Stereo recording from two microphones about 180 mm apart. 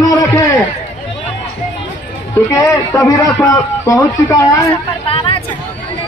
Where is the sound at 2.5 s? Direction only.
20° left (ahead or behind).